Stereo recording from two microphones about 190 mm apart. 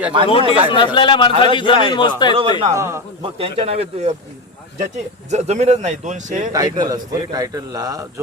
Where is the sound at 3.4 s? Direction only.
35° right (ahead or behind).